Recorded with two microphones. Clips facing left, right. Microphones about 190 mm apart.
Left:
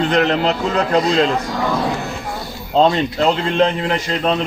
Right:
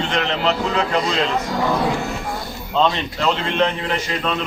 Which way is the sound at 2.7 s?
35° left (ahead or behind).